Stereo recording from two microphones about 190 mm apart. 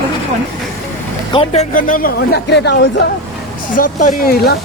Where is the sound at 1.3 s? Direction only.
30° left (ahead or behind).